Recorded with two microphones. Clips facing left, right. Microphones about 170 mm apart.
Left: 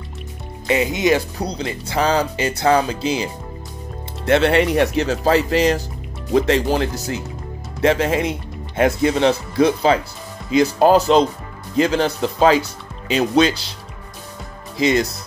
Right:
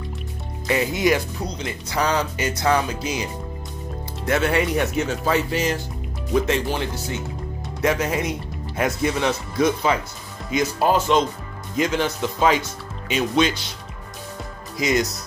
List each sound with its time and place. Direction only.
0.7 s speech: 20° left (ahead or behind)
1.4 s speech: 35° left (ahead or behind)
4.4 s speech: 70° left (ahead or behind)
5.0 s speech: 35° left (ahead or behind)
6.7 s speech: 40° left (ahead or behind)
14.8 s speech: 30° left (ahead or behind)